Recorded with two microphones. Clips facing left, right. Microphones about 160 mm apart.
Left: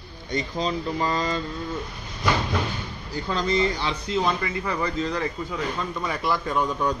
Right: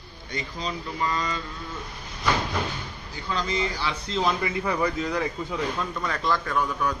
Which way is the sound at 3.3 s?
35° left (ahead or behind).